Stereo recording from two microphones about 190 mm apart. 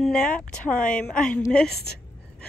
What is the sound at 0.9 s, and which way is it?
Speech, 5° left (ahead or behind).